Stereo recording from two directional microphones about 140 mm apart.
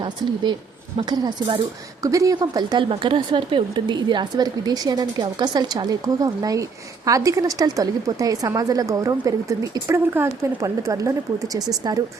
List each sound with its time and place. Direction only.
0.9 s a woman's voice: 30° right (ahead or behind)